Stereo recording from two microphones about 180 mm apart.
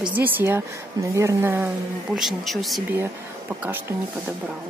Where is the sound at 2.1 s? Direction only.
Centre (ahead or behind).